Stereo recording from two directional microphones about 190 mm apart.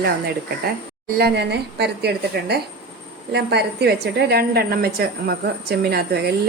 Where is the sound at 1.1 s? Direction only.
60° right (ahead or behind).